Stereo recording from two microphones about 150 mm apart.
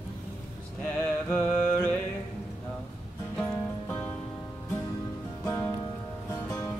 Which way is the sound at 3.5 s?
10° left (ahead or behind).